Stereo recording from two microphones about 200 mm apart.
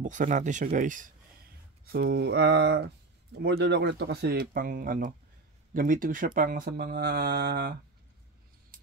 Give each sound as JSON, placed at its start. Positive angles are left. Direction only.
{"t": 0.0, "sound": "speech", "side_deg": -40}
{"t": 1.9, "sound": "speech", "side_deg": -55}
{"t": 8.7, "sound": "a sound", "side_deg": -45}